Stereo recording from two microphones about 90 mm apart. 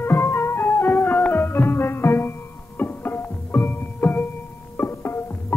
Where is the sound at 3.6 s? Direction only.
15° left (ahead or behind).